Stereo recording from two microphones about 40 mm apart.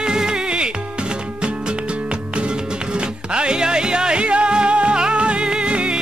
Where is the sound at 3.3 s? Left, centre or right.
Right.